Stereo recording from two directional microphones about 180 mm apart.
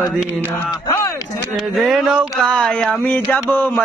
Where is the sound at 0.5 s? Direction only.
15° left (ahead or behind).